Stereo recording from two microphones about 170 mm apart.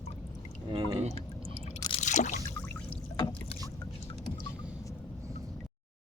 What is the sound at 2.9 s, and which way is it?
Boat, 30° left (ahead or behind).